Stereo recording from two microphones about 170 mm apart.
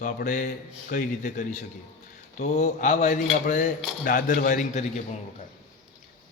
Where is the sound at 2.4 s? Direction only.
40° left (ahead or behind).